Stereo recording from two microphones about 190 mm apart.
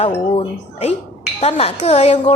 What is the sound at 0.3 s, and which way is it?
Speech, 35° left (ahead or behind).